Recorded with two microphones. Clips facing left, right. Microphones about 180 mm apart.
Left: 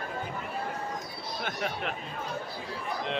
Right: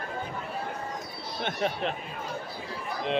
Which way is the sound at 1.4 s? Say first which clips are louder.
Right 5 dB; 25° right (ahead or behind).